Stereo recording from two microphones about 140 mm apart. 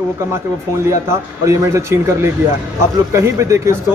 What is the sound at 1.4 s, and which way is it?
Speech, 20° right (ahead or behind).